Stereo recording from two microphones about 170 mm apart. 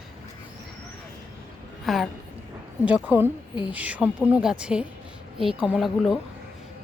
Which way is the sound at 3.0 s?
15° right (ahead or behind).